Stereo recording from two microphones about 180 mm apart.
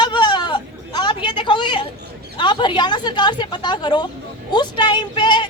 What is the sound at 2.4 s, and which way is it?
A woman's voice, 25° left (ahead or behind).